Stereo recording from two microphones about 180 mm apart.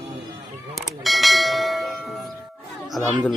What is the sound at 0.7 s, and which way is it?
Bell, centre (ahead or behind).